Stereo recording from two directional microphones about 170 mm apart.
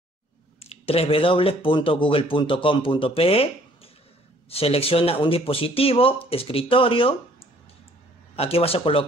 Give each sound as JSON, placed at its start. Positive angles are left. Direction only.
{"t": 0.6, "sound": "speech", "side_deg": 35}